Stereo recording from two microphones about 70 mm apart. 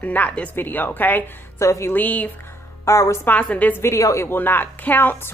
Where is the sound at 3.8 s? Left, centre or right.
Left.